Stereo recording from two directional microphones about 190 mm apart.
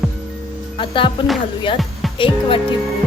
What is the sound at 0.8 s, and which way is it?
Speech, 25° left (ahead or behind).